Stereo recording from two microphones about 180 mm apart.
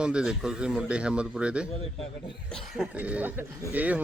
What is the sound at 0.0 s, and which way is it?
Speech, 5° right (ahead or behind).